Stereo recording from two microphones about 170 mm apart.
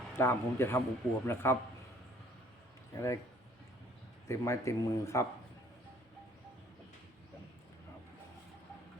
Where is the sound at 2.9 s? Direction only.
20° left (ahead or behind).